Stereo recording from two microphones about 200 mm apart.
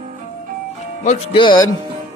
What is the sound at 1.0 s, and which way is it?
Speech, 25° left (ahead or behind).